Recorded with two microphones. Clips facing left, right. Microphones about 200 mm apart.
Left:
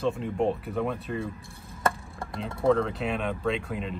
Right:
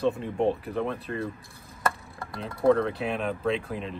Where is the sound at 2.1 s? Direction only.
25° left (ahead or behind).